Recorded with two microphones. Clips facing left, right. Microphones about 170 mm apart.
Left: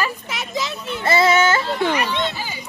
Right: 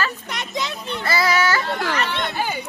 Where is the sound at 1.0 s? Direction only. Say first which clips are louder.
Left 4 dB; 25° left (ahead or behind).